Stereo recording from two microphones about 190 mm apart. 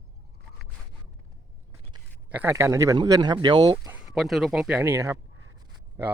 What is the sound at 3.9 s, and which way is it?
Speech, 5° right (ahead or behind).